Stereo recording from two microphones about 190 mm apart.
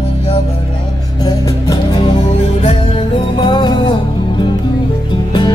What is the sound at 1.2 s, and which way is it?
Music, 20° left (ahead or behind).